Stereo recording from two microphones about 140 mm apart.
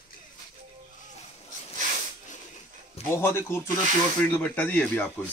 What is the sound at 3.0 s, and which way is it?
Speech, 15° left (ahead or behind).